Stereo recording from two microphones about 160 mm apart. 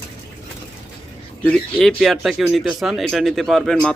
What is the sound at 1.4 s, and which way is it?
Speech, 5° left (ahead or behind).